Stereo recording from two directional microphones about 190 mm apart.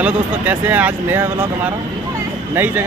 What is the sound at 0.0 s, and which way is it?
Speech, 10° right (ahead or behind).